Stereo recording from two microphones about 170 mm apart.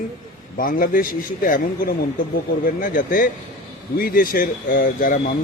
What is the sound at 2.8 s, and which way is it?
Speech, 55° left (ahead or behind).